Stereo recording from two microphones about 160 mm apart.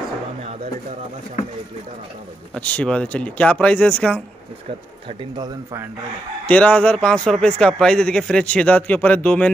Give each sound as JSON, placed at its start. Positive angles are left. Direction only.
{"t": 2.5, "sound": "a man's voice", "side_deg": 5}
{"t": 5.3, "sound": "speech", "side_deg": -25}
{"t": 6.4, "sound": "a man's voice", "side_deg": 10}